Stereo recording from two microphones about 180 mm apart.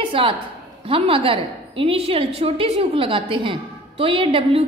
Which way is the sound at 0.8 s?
30° right (ahead or behind).